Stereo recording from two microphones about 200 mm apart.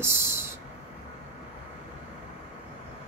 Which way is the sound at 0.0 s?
10° right (ahead or behind).